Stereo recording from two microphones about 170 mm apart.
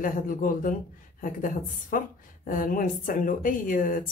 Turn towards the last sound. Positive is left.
turn(degrees=55)  # may be behind; listen again after turning